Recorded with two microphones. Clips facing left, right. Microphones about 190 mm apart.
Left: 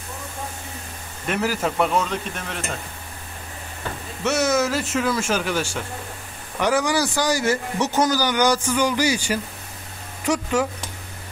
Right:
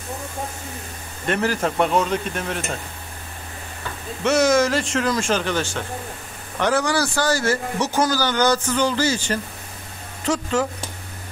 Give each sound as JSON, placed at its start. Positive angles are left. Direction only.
{"t": 1.2, "sound": "a man's voice", "side_deg": 5}
{"t": 4.2, "sound": "a man's voice", "side_deg": 5}